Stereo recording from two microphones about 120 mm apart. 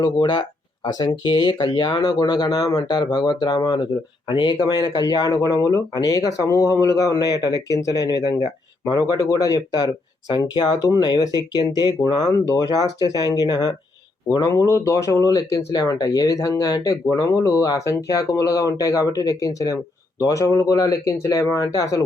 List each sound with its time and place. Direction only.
0.0 s speech: 40° left (ahead or behind)